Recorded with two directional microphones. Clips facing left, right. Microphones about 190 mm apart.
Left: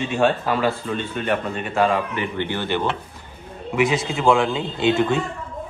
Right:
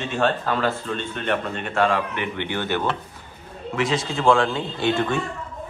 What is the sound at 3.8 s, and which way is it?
Speech, centre (ahead or behind).